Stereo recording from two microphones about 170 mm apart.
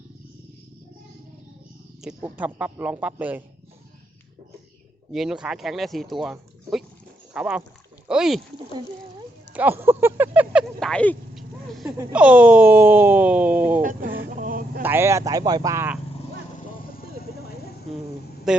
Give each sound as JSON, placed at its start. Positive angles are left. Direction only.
{"t": 2.0, "sound": "speech", "side_deg": -5}
{"t": 5.1, "sound": "speech", "side_deg": -5}
{"t": 8.0, "sound": "rowboat", "side_deg": -5}
{"t": 9.5, "sound": "speech", "side_deg": -10}
{"t": 13.8, "sound": "a sound", "side_deg": -55}
{"t": 14.8, "sound": "speech", "side_deg": -10}
{"t": 18.5, "sound": "speech", "side_deg": -5}